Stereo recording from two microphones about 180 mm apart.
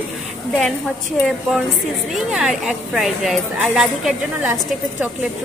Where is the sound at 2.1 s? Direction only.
5° right (ahead or behind).